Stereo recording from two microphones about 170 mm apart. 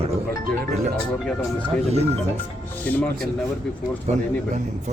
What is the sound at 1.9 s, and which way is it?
Speech, 40° right (ahead or behind).